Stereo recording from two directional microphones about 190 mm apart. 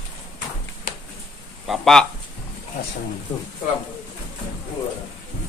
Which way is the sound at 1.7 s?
Centre (ahead or behind).